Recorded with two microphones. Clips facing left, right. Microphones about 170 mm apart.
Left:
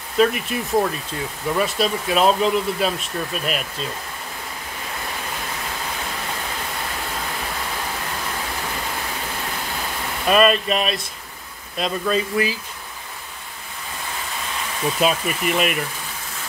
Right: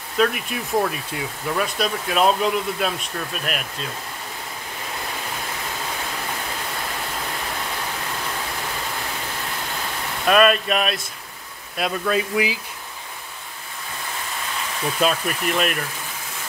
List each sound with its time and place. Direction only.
0.2 s speech: centre (ahead or behind)
10.2 s speech: centre (ahead or behind)
15.0 s speech: 5° left (ahead or behind)